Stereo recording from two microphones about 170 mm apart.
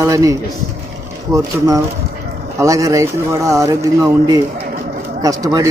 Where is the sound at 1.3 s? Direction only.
20° right (ahead or behind).